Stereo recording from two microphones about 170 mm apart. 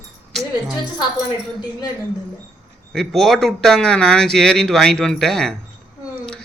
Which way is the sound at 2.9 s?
Centre (ahead or behind).